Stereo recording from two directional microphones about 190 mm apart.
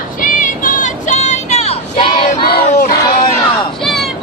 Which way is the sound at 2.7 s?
45° left (ahead or behind).